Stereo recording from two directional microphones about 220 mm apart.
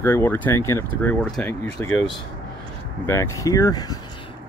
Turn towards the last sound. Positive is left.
turn(degrees=15)  # may be behind; listen again after turning